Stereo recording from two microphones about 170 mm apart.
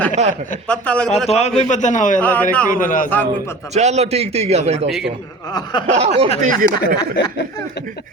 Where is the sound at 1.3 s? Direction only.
40° left (ahead or behind).